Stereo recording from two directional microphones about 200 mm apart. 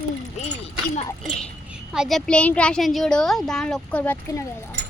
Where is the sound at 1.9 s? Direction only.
Centre (ahead or behind).